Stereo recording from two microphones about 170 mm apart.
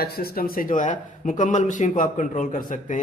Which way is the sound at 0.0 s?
60° left (ahead or behind).